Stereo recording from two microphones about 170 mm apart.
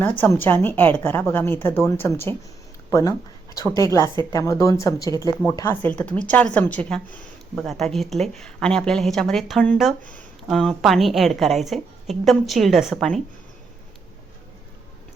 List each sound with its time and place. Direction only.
0.0 s a woman's voice: 10° left (ahead or behind)